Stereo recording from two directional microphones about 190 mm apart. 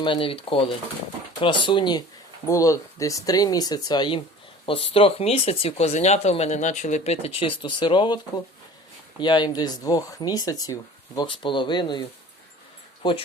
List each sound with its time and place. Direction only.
0.0 s speech: 25° left (ahead or behind)